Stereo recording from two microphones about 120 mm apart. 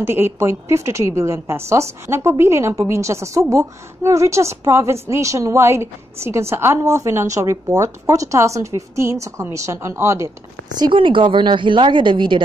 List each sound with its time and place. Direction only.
0.0 s a woman's voice: 20° right (ahead or behind)
10.8 s speech: 45° right (ahead or behind)